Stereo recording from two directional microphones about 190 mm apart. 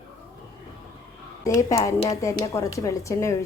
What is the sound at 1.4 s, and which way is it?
A woman's voice, 20° left (ahead or behind).